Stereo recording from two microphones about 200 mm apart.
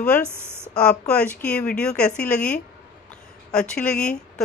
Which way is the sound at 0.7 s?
5° left (ahead or behind).